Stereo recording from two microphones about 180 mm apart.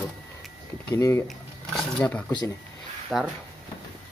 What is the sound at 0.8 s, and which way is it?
Speech, 15° left (ahead or behind).